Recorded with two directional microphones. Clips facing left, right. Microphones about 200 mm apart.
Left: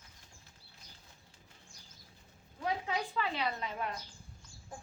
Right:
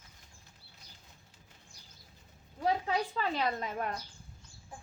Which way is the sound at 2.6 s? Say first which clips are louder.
Right 5 dB; 35° right (ahead or behind).